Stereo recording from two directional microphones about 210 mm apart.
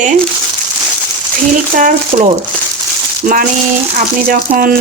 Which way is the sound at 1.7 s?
30° right (ahead or behind).